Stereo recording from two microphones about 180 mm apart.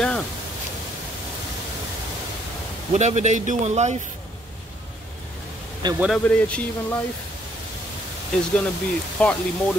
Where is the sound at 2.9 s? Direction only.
40° right (ahead or behind).